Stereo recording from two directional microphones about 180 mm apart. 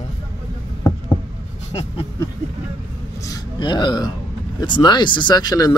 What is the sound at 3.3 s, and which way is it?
Speech, 25° left (ahead or behind).